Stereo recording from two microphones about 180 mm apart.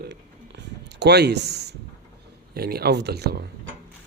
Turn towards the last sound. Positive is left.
turn(degrees=-60)  # may be behind; listen again after turning